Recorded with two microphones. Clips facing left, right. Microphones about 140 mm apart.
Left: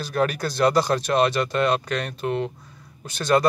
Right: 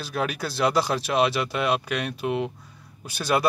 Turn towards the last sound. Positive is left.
turn(degrees=-10)  # may be behind; listen again after turning